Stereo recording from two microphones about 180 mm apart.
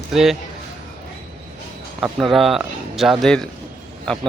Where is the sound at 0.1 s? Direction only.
Centre (ahead or behind).